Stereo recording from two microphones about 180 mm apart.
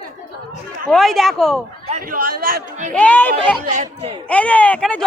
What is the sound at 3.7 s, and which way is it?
Speech, 45° right (ahead or behind).